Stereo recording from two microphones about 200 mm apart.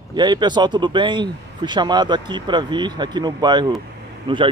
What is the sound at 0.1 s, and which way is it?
A man's voice, 20° right (ahead or behind).